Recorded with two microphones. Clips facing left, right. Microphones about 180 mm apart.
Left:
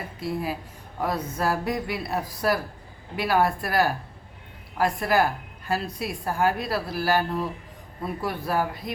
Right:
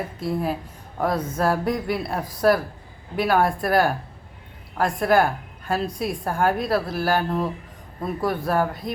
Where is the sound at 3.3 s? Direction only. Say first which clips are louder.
Right 3 dB; 50° right (ahead or behind).